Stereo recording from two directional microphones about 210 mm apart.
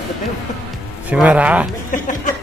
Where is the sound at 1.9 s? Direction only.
40° left (ahead or behind).